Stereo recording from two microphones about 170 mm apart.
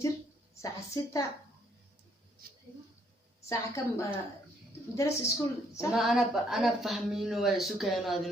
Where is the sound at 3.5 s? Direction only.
15° left (ahead or behind).